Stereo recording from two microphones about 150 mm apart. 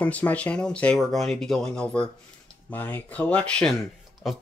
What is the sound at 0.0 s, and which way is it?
Speech, 10° left (ahead or behind).